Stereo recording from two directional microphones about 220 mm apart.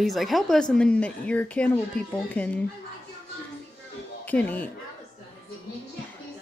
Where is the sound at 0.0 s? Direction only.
Centre (ahead or behind).